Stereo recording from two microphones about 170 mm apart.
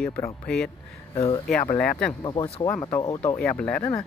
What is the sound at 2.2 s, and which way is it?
Speech, 25° left (ahead or behind).